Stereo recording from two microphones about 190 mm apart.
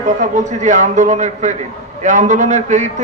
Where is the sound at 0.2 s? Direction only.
40° right (ahead or behind).